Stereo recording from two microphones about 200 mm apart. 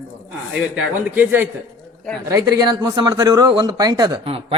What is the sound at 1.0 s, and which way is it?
Speech, 10° right (ahead or behind).